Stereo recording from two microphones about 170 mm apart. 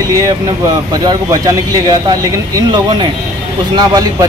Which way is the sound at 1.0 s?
20° right (ahead or behind).